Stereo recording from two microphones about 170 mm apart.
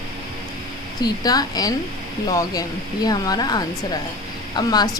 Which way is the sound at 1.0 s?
20° left (ahead or behind).